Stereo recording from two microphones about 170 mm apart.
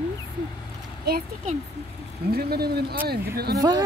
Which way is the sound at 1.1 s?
70° right (ahead or behind).